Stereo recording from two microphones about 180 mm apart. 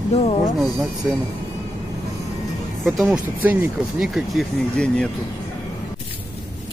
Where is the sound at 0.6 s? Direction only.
Centre (ahead or behind).